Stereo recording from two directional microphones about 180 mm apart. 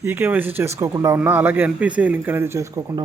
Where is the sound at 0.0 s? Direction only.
10° right (ahead or behind).